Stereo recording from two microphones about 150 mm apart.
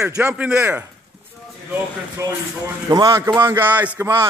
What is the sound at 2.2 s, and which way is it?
A man's voice, 20° right (ahead or behind).